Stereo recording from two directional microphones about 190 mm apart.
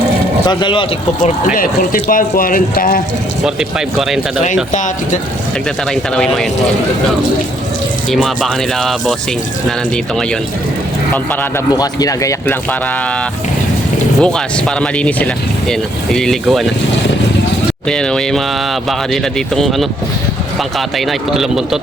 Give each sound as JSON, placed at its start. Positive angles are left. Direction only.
{"t": 0.4, "sound": "speech", "side_deg": 25}
{"t": 1.5, "sound": "speech", "side_deg": 45}
{"t": 3.4, "sound": "speech", "side_deg": -5}
{"t": 4.7, "sound": "speech", "side_deg": 40}
{"t": 5.9, "sound": "speech", "side_deg": 0}
{"t": 8.1, "sound": "speech", "side_deg": 0}
{"t": 14.2, "sound": "speech", "side_deg": 5}
{"t": 17.8, "sound": "speech", "side_deg": 5}